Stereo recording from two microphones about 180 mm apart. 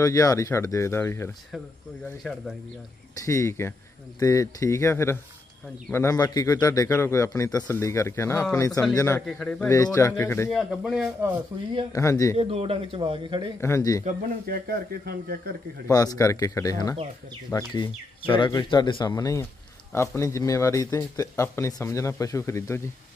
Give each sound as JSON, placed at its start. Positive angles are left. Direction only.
{"t": 0.0, "sound": "speech", "side_deg": 20}
{"t": 3.3, "sound": "speech", "side_deg": 15}
{"t": 9.7, "sound": "speech", "side_deg": 15}
{"t": 10.5, "sound": "speech", "side_deg": 0}
{"t": 11.9, "sound": "speech", "side_deg": 15}
{"t": 12.4, "sound": "a man's voice", "side_deg": -35}
{"t": 13.6, "sound": "speech", "side_deg": 15}
{"t": 14.0, "sound": "speech", "side_deg": -55}
{"t": 15.9, "sound": "speech", "side_deg": 20}